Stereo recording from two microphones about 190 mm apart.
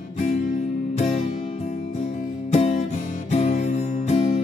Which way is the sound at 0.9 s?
40° left (ahead or behind).